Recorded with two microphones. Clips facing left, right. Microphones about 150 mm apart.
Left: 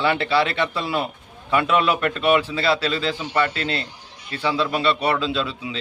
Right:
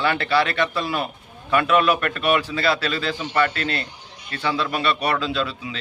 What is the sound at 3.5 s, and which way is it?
A man's voice, 25° left (ahead or behind).